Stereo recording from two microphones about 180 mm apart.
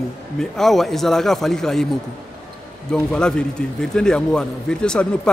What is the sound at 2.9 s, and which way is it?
A man's voice, 5° left (ahead or behind).